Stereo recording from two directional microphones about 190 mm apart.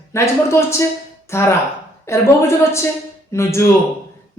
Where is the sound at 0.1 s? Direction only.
15° left (ahead or behind).